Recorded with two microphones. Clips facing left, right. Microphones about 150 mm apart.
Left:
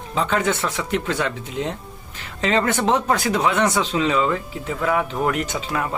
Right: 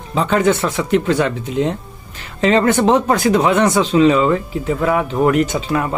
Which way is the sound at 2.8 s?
50° right (ahead or behind).